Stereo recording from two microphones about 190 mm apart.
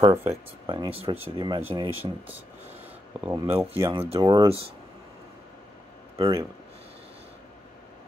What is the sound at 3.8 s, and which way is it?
Speech, 20° right (ahead or behind).